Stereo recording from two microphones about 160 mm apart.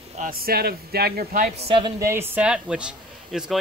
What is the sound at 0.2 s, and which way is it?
Speech, 70° right (ahead or behind).